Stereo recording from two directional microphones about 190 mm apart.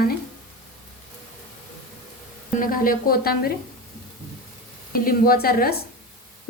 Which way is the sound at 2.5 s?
45° left (ahead or behind).